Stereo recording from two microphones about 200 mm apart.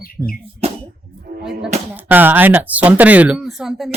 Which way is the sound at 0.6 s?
30° right (ahead or behind).